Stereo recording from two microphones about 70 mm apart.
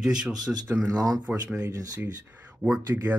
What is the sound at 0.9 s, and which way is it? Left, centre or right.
Speech, right.